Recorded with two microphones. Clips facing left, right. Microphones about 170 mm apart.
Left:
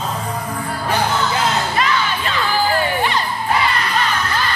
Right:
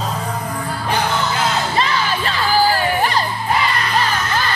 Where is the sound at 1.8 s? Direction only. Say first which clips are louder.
Even; 35° right (ahead or behind).